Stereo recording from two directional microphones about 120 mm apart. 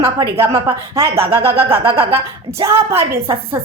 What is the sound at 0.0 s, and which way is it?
Music, 50° right (ahead or behind).